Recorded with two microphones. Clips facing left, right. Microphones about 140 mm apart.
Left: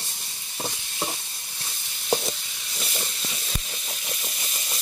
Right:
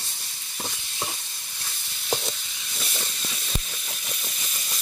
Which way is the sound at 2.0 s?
10° left (ahead or behind).